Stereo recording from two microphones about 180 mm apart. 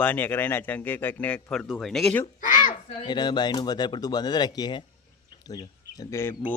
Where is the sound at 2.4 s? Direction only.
45° left (ahead or behind).